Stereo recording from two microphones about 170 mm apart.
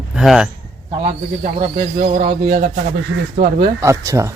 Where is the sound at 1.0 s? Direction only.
45° right (ahead or behind).